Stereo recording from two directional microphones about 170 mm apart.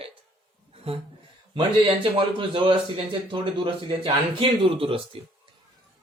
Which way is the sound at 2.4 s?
30° right (ahead or behind).